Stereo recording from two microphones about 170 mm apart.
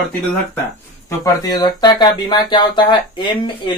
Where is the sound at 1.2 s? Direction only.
25° left (ahead or behind).